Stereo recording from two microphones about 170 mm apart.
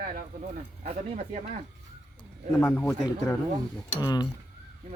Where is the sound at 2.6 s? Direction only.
10° left (ahead or behind).